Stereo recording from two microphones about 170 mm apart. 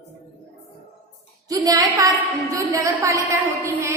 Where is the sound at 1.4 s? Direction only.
20° right (ahead or behind).